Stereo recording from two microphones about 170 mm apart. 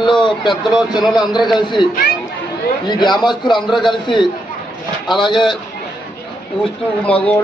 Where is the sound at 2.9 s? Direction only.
25° left (ahead or behind).